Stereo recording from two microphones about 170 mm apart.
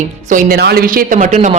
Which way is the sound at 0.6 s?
65° right (ahead or behind).